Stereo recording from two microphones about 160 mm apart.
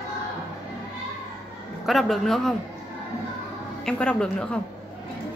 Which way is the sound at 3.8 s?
5° left (ahead or behind).